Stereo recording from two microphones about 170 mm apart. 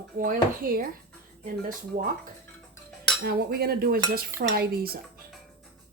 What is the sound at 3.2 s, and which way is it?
Dishes, 65° right (ahead or behind).